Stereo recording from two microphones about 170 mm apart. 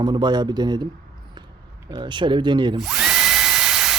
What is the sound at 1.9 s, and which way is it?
Speech, 30° right (ahead or behind).